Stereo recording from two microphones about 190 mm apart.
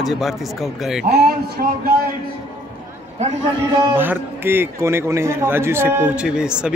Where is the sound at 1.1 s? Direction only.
55° right (ahead or behind).